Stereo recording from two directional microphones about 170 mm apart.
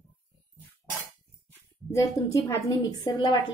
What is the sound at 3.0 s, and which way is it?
Speech, 30° left (ahead or behind).